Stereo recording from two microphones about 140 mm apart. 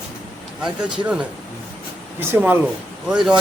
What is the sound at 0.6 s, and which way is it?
A man's voice, 5° right (ahead or behind).